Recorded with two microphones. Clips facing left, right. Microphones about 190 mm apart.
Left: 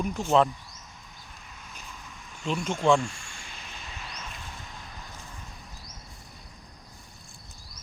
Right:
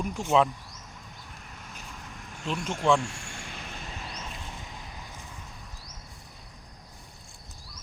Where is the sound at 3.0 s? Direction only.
65° right (ahead or behind); by 4.0 s 45° right (ahead or behind).